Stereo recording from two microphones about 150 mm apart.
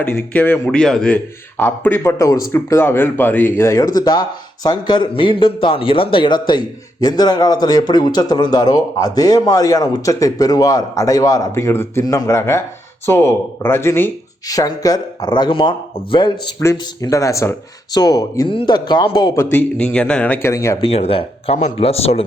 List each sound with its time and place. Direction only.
0.3 s a man's voice: 10° left (ahead or behind); by 19.3 s 30° left (ahead or behind)
19.4 s a man's voice: 15° left (ahead or behind)
20.5 s speech: 20° left (ahead or behind)
20.8 s speech: 40° left (ahead or behind)